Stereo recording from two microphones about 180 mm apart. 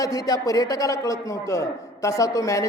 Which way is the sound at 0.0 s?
20° left (ahead or behind).